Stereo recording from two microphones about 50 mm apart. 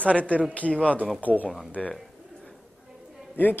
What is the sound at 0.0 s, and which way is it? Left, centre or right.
Speech, left.